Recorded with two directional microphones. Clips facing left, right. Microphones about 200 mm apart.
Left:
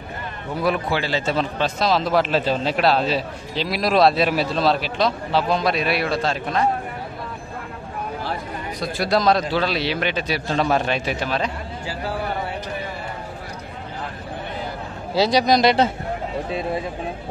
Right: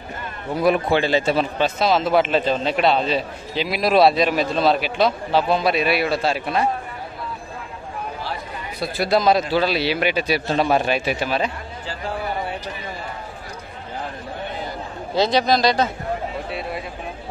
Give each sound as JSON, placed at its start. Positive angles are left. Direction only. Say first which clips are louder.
{"t": 0.6, "sound": "a man's voice", "louder": "right 4 dB", "side_deg": -20}
{"t": 8.7, "sound": "a man's voice", "louder": "right 1 dB", "side_deg": -5}
{"t": 15.1, "sound": "speech", "louder": "left 1 dB", "side_deg": 10}